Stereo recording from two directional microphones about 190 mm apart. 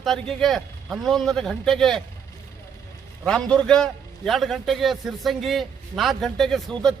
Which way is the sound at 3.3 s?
5° left (ahead or behind).